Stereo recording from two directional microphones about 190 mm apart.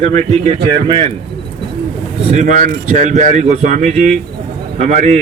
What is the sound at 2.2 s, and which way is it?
Speech, 40° right (ahead or behind).